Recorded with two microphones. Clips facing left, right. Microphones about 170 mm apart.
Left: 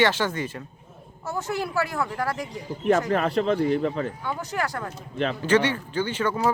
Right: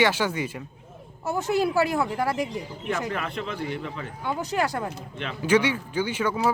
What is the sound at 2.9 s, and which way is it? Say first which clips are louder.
A man's voice: left 9 dB; 40° left (ahead or behind).